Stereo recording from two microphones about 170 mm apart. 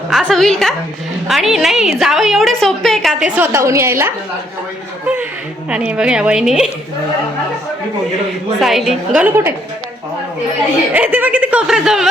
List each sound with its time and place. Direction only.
0.1 s a woman's voice: centre (ahead or behind)
5.6 s a woman's voice: 5° right (ahead or behind)
8.6 s a woman's voice: centre (ahead or behind)
10.9 s speech: 10° right (ahead or behind)